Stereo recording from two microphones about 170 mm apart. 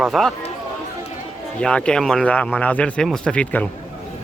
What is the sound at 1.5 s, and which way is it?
Speech, 5° left (ahead or behind).